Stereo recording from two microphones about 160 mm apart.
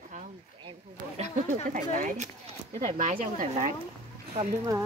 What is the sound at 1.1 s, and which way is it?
Speech, 45° right (ahead or behind).